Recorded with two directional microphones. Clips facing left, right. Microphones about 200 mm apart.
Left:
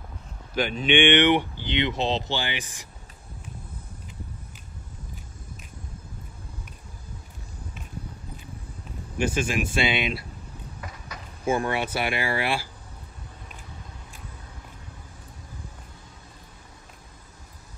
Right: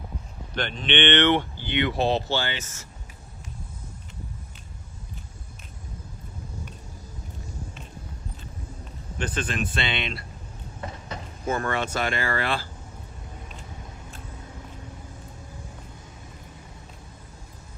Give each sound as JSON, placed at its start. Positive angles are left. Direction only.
{"t": 0.6, "sound": "speech", "side_deg": 5}
{"t": 9.2, "sound": "speech", "side_deg": 10}
{"t": 10.8, "sound": "a sound", "side_deg": -30}
{"t": 11.4, "sound": "speech", "side_deg": 10}